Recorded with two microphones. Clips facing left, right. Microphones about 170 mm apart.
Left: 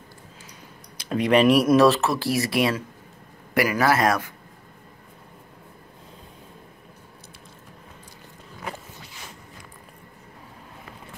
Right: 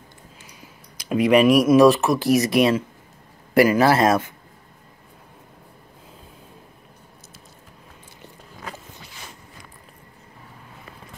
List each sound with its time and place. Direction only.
0.9 s speech: 10° right (ahead or behind)